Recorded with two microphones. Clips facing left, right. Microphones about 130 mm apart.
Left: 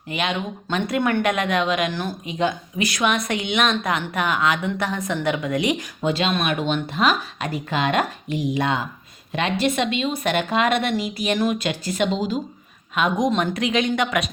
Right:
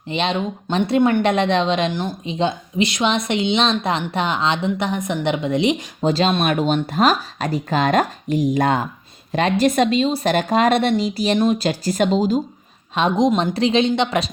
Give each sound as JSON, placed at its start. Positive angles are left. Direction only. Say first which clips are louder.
{"t": 0.1, "sound": "speech", "louder": "right 4 dB", "side_deg": -30}
{"t": 6.1, "sound": "speech", "louder": "right 4 dB", "side_deg": -35}
{"t": 12.9, "sound": "speech", "louder": "right 4 dB", "side_deg": -30}